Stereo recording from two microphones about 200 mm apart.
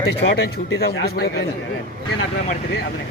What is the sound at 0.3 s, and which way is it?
A man's voice, 60° left (ahead or behind).